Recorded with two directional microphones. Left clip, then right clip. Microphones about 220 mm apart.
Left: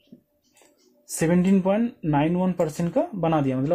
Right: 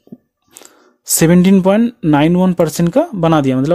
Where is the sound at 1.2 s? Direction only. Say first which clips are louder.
Right 10 dB; 50° right (ahead or behind).